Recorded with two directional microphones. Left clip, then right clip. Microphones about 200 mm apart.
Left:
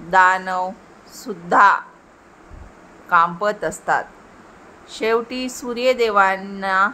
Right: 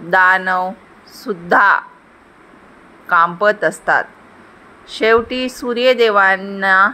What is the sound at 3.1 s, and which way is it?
Speech, 15° right (ahead or behind).